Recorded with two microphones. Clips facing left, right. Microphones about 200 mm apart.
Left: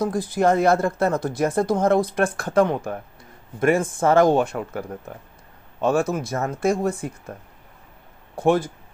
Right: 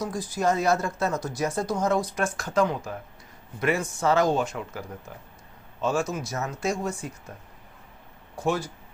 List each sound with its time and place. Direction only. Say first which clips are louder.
0.0 s speech: left 6 dB; 55° left (ahead or behind)
8.4 s speech: left 7 dB; 55° left (ahead or behind)